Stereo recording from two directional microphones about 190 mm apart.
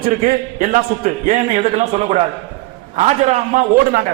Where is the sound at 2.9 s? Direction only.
35° right (ahead or behind).